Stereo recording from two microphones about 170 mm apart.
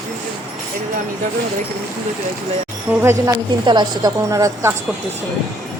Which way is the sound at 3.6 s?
25° right (ahead or behind).